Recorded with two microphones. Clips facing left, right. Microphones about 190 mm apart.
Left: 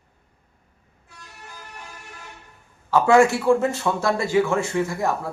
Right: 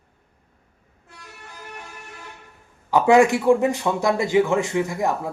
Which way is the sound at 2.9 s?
15° right (ahead or behind).